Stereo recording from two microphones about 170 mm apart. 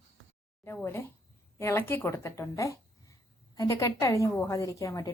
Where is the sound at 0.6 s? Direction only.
15° left (ahead or behind).